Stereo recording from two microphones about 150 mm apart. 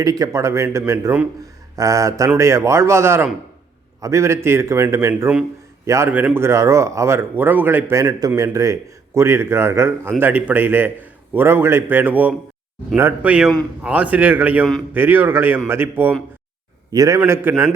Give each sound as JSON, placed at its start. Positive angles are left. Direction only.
{"t": 0.0, "sound": "a man's voice", "side_deg": -25}
{"t": 16.9, "sound": "a man's voice", "side_deg": -25}
{"t": 17.2, "sound": "a man's voice", "side_deg": -15}